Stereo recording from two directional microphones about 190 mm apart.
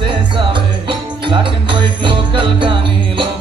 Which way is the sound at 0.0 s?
25° right (ahead or behind).